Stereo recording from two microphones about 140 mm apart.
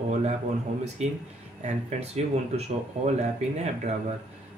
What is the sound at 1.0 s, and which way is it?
Speech, 55° right (ahead or behind).